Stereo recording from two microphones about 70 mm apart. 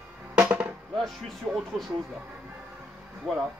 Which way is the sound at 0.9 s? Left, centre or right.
Centre.